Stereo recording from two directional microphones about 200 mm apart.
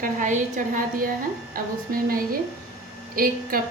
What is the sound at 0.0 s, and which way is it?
A woman's voice, 40° right (ahead or behind).